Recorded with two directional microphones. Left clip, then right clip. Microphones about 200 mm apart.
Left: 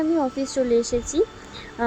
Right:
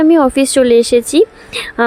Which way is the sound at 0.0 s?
55° right (ahead or behind).